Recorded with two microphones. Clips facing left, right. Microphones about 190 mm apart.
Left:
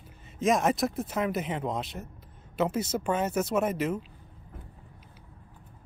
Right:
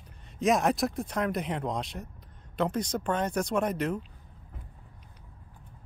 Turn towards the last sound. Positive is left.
turn(degrees=0)  # may be behind; listen again after turning